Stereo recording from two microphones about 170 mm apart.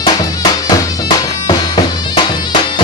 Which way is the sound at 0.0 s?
20° left (ahead or behind).